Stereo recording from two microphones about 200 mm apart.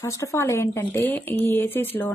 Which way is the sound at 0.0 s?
15° left (ahead or behind).